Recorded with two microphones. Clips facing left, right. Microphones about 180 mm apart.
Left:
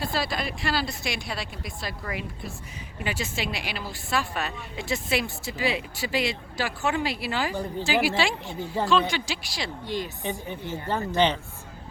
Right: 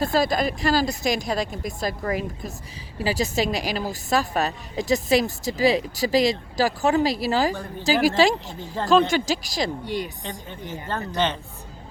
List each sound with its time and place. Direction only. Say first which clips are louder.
0.0 s a woman's voice: right 8 dB; 45° right (ahead or behind)
8.5 s speech: left 1 dB; 10° left (ahead or behind)
8.9 s speech: right 8 dB; 45° right (ahead or behind)
9.8 s a woman's voice: right 2 dB; 10° right (ahead or behind)
10.8 s speech: left 2 dB; 10° left (ahead or behind)